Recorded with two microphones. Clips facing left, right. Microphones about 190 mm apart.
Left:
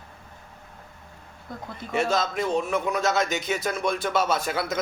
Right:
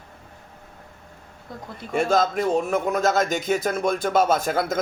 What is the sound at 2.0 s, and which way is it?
A man's voice, 50° right (ahead or behind).